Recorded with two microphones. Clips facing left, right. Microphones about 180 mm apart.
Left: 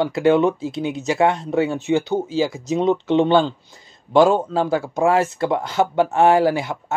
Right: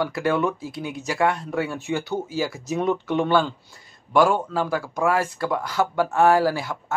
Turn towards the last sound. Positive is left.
turn(degrees=20)  # may be behind; listen again after turning